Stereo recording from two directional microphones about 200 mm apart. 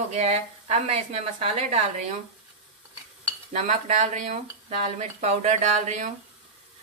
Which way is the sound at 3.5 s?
35° right (ahead or behind).